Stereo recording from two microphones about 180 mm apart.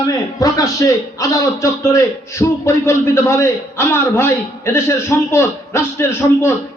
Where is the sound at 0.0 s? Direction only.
20° left (ahead or behind).